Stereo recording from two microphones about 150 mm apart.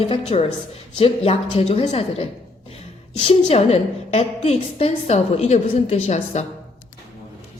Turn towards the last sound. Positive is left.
turn(degrees=50)  # may be behind; listen again after turning